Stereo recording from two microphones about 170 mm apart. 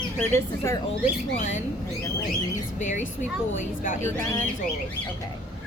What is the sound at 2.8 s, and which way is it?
Speech, 50° left (ahead or behind).